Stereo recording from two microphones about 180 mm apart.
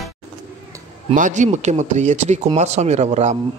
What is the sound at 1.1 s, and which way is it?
A man's voice, 45° right (ahead or behind).